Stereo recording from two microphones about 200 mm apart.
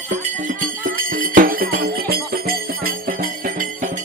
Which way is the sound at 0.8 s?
45° right (ahead or behind).